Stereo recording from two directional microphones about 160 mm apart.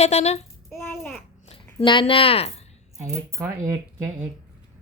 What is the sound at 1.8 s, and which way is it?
Speech, 30° left (ahead or behind).